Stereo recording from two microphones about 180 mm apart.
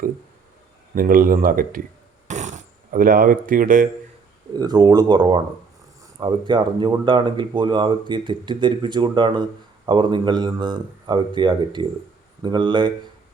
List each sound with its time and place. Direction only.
0.9 s speech: 50° right (ahead or behind)
2.2 s a sound: 40° right (ahead or behind)
4.5 s speech: 20° right (ahead or behind)